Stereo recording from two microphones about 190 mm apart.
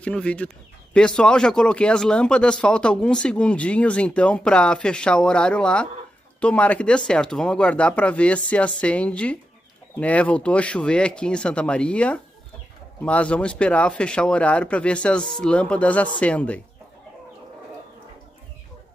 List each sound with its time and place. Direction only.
0.0 s speech: 5° left (ahead or behind)